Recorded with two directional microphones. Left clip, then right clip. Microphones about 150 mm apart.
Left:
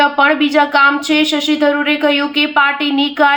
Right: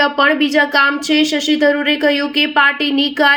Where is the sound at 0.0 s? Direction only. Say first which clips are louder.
Left 2 dB; 40° right (ahead or behind).